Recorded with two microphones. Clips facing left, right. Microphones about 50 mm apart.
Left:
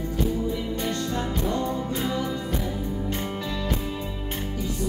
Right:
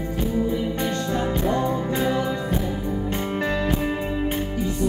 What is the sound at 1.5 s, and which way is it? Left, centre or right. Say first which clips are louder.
Music: right 4 dB; right.